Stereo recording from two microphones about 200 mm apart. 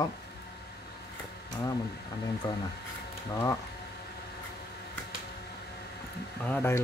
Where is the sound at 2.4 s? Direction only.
20° left (ahead or behind).